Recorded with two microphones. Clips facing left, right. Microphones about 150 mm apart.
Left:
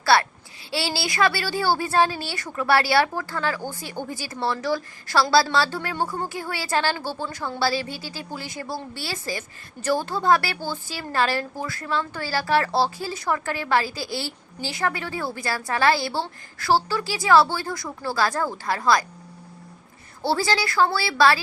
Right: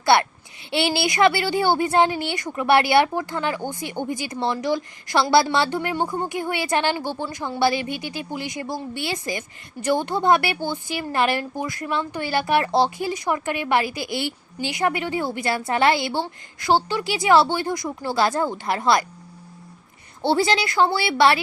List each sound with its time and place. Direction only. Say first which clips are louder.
0.0 s speech: right 2 dB; 20° right (ahead or behind)
20.2 s speech: right 3 dB; 20° right (ahead or behind)